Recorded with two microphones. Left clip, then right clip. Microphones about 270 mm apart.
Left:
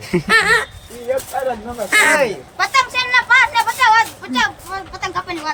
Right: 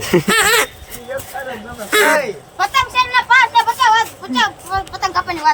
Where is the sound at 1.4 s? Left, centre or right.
Left.